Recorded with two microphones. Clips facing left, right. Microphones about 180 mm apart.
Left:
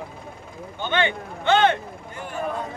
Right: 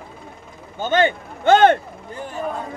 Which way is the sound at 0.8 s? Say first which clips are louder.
Right 6 dB; 40° right (ahead or behind).